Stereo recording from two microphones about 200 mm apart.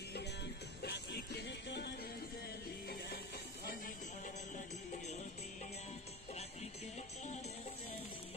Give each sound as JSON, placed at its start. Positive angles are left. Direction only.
{"t": 0.8, "sound": "music", "side_deg": 55}